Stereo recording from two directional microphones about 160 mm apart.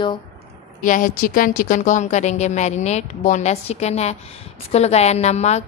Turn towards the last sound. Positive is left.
turn(degrees=45)  # may be behind; listen again after turning